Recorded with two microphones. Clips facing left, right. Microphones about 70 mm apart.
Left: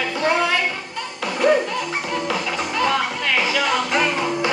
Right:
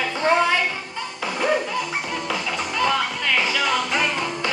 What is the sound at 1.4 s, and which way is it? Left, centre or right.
Music, centre.